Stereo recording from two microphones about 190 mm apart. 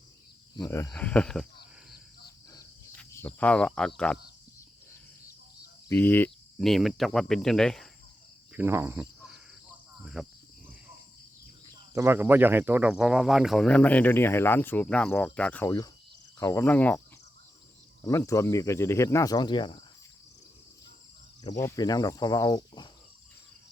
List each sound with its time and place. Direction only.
0.5 s cricket: 15° left (ahead or behind)
2.9 s speech: 10° left (ahead or behind)
5.9 s speech: 10° left (ahead or behind)
8.5 s cricket: 10° right (ahead or behind)
11.9 s speech: 10° right (ahead or behind); by 15.7 s 5° left (ahead or behind)
16.4 s cricket: 15° left (ahead or behind)
18.3 s cricket: 15° left (ahead or behind)
21.4 s speech: 15° left (ahead or behind)